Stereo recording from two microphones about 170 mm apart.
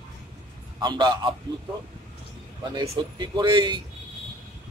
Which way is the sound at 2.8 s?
25° right (ahead or behind).